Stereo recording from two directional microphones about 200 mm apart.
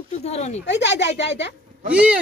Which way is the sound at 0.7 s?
60° left (ahead or behind).